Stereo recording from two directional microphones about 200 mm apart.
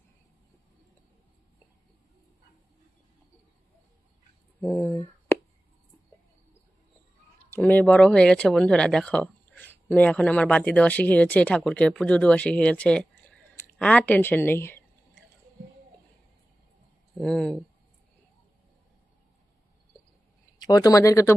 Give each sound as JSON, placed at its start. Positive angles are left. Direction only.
{"t": 4.6, "sound": "a sound", "side_deg": 10}
{"t": 7.5, "sound": "speech", "side_deg": 10}
{"t": 17.2, "sound": "speech", "side_deg": 5}
{"t": 20.6, "sound": "speech", "side_deg": 20}